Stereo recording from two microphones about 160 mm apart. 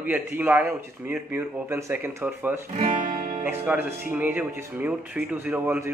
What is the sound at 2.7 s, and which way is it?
Speech, 60° right (ahead or behind).